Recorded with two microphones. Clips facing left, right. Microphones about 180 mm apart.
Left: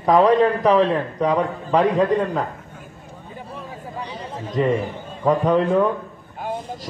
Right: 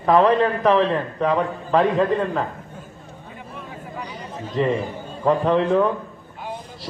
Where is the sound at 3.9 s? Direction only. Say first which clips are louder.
Left 2 dB; 30° left (ahead or behind).